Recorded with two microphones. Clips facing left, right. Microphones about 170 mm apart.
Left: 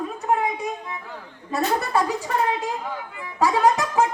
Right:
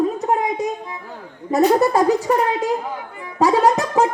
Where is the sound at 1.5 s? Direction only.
40° right (ahead or behind).